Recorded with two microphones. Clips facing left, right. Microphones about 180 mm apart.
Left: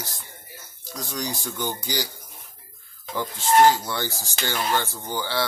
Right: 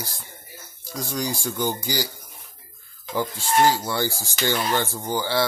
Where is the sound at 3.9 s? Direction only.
10° right (ahead or behind).